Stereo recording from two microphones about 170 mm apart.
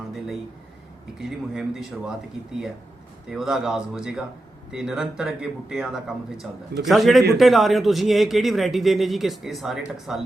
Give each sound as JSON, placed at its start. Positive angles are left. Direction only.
{"t": 1.2, "sound": "speech", "side_deg": 0}
{"t": 3.2, "sound": "speech", "side_deg": 0}